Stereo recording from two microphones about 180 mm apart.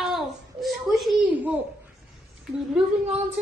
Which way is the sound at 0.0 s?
Centre (ahead or behind).